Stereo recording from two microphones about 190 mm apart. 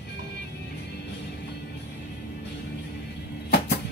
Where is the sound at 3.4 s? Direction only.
60° left (ahead or behind).